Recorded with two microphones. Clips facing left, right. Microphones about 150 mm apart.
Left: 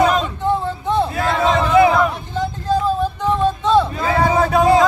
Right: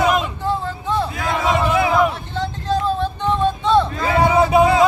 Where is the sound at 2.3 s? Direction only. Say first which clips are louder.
Left 2 dB; 10° left (ahead or behind).